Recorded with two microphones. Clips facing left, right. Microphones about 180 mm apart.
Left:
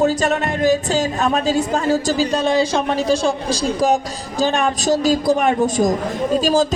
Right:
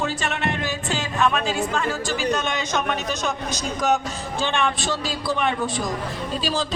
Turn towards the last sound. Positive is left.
turn(degrees=45)  # may be behind; listen again after turning